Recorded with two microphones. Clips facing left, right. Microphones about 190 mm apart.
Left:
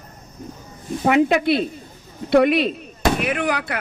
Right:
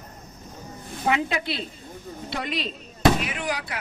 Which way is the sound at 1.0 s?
60° left (ahead or behind).